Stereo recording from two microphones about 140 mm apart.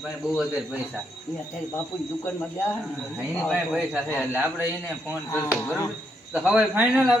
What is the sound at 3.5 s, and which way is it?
Speech, centre (ahead or behind).